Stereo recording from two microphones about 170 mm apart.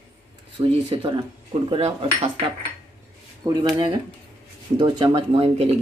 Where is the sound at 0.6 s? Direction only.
30° right (ahead or behind).